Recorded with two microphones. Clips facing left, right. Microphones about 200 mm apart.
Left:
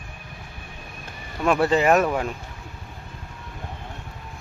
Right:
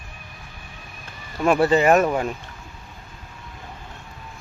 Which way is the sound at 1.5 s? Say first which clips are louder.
Right 2 dB; centre (ahead or behind).